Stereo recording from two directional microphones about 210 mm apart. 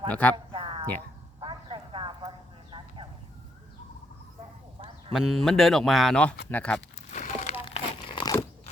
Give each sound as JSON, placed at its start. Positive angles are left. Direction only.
{"t": 0.1, "sound": "speech", "side_deg": 5}
{"t": 0.3, "sound": "a sound", "side_deg": -25}
{"t": 5.1, "sound": "speech", "side_deg": 0}
{"t": 7.1, "sound": "crumpling", "side_deg": 35}